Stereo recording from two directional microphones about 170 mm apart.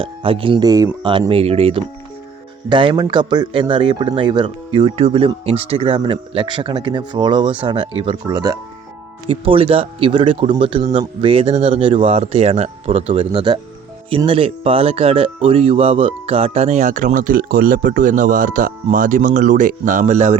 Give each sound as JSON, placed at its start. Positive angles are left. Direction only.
{"t": 0.0, "sound": "speech", "side_deg": -30}
{"t": 1.3, "sound": "speech", "side_deg": -35}